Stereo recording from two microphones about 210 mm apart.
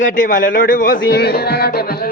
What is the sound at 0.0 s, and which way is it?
Speech, 40° left (ahead or behind).